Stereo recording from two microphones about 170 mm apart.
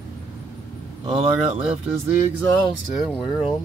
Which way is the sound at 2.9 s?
5° right (ahead or behind).